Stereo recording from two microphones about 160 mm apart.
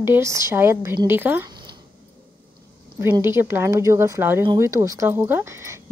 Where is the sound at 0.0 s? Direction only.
15° right (ahead or behind).